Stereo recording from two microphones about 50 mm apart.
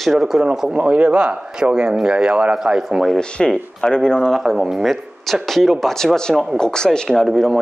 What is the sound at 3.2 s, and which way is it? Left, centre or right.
Speech, centre.